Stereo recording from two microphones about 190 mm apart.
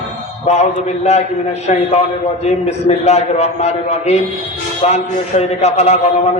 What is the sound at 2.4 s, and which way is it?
A man's voice, 35° left (ahead or behind).